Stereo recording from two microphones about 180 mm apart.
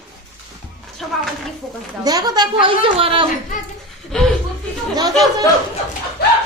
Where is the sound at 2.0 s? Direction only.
20° right (ahead or behind).